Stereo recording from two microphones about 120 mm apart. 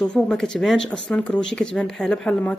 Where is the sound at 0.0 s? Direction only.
5° left (ahead or behind).